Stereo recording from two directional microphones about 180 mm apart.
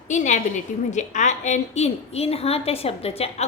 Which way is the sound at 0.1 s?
40° left (ahead or behind).